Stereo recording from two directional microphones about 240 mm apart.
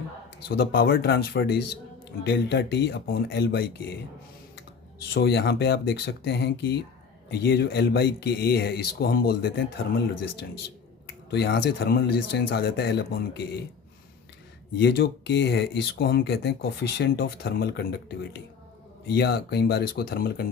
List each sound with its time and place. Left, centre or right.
0.4 s speech: left
5.1 s speech: left
11.3 s speech: left
14.8 s speech: left